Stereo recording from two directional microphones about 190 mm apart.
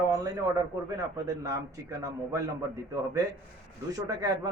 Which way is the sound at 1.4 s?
15° right (ahead or behind).